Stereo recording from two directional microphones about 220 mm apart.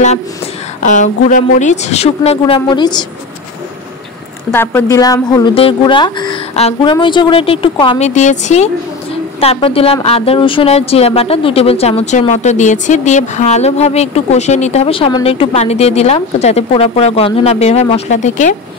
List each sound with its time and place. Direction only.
0.8 s speech: 35° left (ahead or behind)
4.5 s speech: 10° left (ahead or behind); by 18.6 s 35° left (ahead or behind)